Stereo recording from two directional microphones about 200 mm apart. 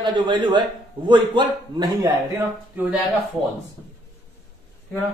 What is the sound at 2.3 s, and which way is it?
Speech, 10° right (ahead or behind).